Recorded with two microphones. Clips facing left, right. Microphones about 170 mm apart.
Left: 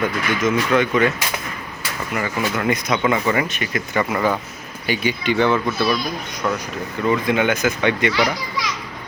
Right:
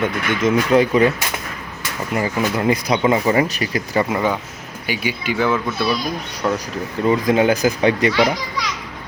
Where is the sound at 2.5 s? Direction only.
30° right (ahead or behind).